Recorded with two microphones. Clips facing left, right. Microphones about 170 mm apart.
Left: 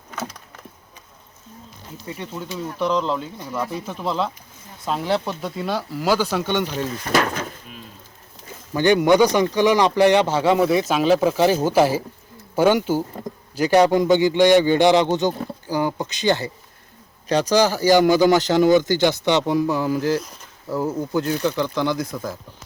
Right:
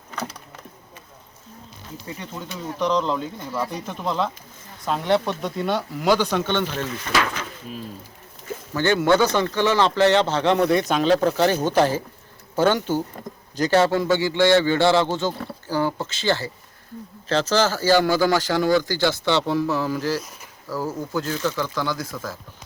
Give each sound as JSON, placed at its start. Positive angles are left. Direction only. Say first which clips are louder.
{"t": 2.1, "sound": "speech", "louder": "left 6 dB", "side_deg": 5}
{"t": 7.1, "sound": "speech", "louder": "left 4 dB", "side_deg": 45}
{"t": 8.7, "sound": "speech", "louder": "left 3 dB", "side_deg": 15}